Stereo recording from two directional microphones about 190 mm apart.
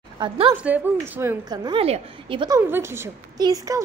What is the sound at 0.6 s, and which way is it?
A woman's voice, 10° right (ahead or behind).